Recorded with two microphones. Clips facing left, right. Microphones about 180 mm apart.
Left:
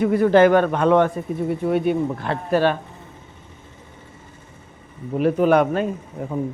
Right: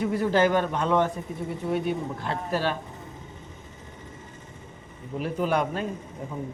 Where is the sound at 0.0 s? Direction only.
60° left (ahead or behind).